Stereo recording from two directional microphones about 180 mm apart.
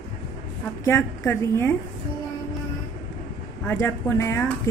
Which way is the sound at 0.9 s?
15° left (ahead or behind).